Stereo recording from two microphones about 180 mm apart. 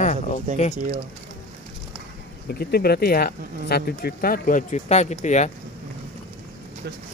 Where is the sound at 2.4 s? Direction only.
60° left (ahead or behind); by 5.5 s 40° left (ahead or behind).